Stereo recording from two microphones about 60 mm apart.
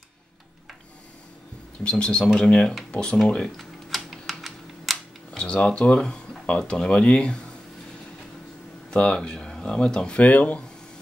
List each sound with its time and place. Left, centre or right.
1.8 s speech: centre
3.5 s typing: centre
5.3 s speech: centre
8.9 s speech: centre
10.1 s speech: left